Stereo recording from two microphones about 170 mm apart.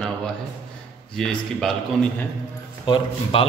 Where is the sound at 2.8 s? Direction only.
30° left (ahead or behind).